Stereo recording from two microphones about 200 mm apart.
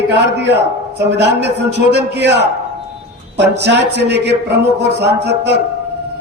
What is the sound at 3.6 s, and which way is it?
A man's voice, 60° right (ahead or behind).